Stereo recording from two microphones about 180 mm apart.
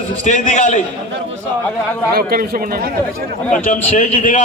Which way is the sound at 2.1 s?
55° right (ahead or behind).